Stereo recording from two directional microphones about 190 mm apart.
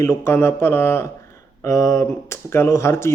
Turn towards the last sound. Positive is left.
turn(degrees=15)  # may be behind; listen again after turning